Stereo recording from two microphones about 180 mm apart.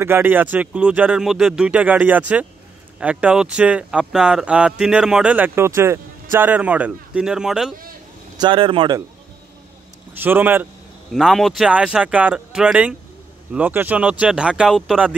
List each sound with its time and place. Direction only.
0.0 s speech: 10° right (ahead or behind)
8.4 s speech: 30° right (ahead or behind)
10.1 s speech: 10° right (ahead or behind)